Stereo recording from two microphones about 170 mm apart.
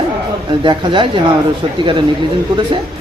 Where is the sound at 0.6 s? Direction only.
25° right (ahead or behind).